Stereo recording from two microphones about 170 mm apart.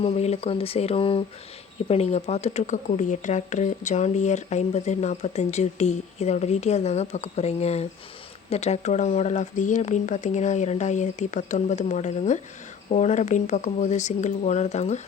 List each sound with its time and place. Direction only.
0.0 s speech: 40° left (ahead or behind)